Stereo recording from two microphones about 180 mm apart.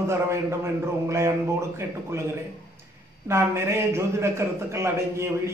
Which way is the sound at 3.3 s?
15° right (ahead or behind).